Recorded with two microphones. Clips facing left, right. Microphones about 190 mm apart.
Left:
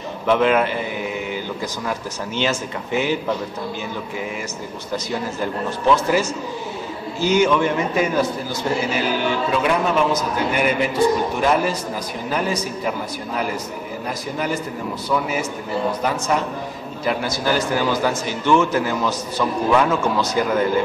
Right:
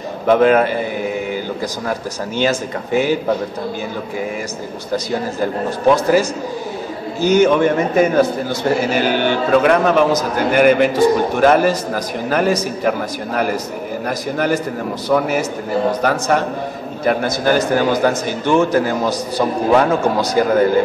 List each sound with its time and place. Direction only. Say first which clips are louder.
0.3 s a man's voice: right 5 dB; 45° right (ahead or behind)
1.9 s a man's voice: right 4 dB; 45° right (ahead or behind)
4.9 s a man's voice: right 5 dB; 40° right (ahead or behind)
7.2 s a man's voice: right 5 dB; 45° right (ahead or behind)
14.0 s a man's voice: right 6 dB; 70° right (ahead or behind)
16.0 s a man's voice: right 5 dB; 65° right (ahead or behind)
17.0 s a man's voice: right 5 dB; 50° right (ahead or behind)